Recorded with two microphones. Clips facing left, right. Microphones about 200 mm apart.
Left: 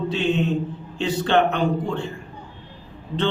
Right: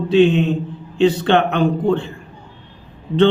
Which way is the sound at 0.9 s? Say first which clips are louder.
Right 5 dB; 65° right (ahead or behind).